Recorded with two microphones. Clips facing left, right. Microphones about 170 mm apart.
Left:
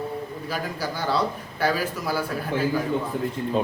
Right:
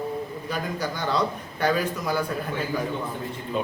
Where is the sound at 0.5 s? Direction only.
5° left (ahead or behind).